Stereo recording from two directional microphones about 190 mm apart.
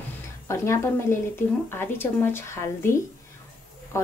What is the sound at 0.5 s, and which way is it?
Speech, 15° left (ahead or behind).